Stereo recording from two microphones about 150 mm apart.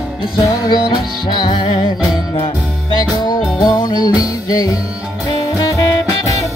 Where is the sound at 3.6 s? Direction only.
30° left (ahead or behind).